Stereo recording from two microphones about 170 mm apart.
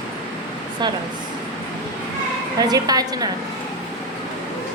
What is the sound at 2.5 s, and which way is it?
Speech, 20° right (ahead or behind).